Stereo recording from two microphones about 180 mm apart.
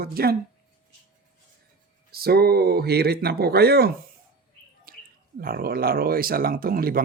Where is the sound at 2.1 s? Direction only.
60° right (ahead or behind).